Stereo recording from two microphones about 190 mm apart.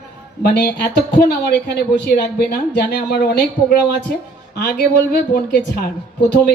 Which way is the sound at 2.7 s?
60° left (ahead or behind).